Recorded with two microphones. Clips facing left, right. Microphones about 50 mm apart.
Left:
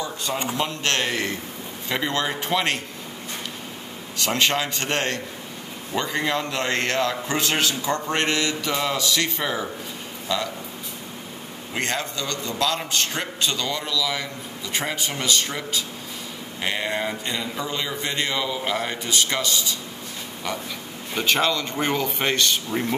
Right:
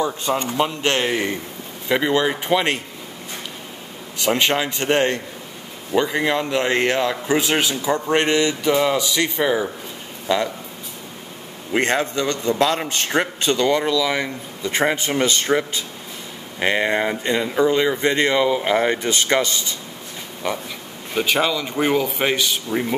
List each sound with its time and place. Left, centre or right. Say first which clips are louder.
0.0 s a man's voice: right 6 dB; right
4.2 s a man's voice: right 3 dB; centre
11.7 s a man's voice: right 7 dB; right
21.1 s a man's voice: right 2 dB; centre